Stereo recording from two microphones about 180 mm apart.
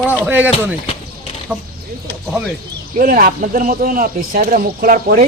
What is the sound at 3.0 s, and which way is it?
A man's voice, 50° right (ahead or behind).